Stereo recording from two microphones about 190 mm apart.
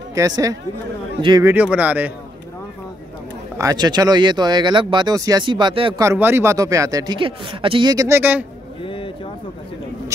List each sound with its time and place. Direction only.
0.2 s speech: 20° right (ahead or behind)
1.4 s speech: 10° right (ahead or behind)
3.5 s speech: 20° right (ahead or behind)
6.0 s speech: 10° right (ahead or behind)
8.8 s a sound: 25° left (ahead or behind)